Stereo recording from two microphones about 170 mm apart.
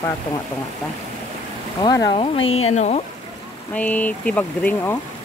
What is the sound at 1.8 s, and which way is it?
Speech, 25° left (ahead or behind).